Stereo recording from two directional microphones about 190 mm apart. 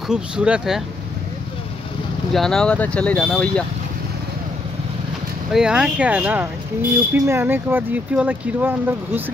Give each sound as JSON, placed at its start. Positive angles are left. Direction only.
{"t": 0.1, "sound": "speech", "side_deg": -5}
{"t": 2.3, "sound": "speech", "side_deg": 0}
{"t": 5.5, "sound": "speech", "side_deg": -5}